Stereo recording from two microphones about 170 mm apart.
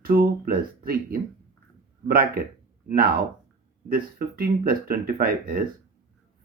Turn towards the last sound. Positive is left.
turn(degrees=-60)  # may be behind; listen again after turning